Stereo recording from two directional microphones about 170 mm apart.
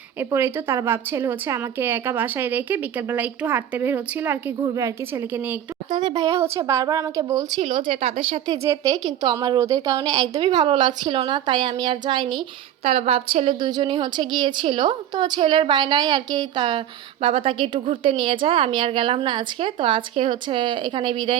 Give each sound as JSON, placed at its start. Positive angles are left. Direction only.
{"t": 0.2, "sound": "a woman's voice", "side_deg": -15}
{"t": 5.9, "sound": "a woman's voice", "side_deg": -25}
{"t": 8.6, "sound": "a woman's voice", "side_deg": -15}